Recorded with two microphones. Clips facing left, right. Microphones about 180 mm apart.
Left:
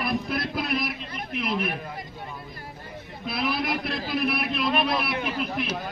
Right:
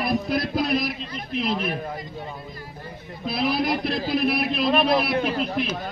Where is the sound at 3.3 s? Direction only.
25° right (ahead or behind).